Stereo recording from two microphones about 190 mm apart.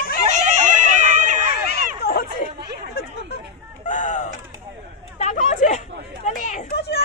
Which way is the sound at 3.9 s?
40° left (ahead or behind).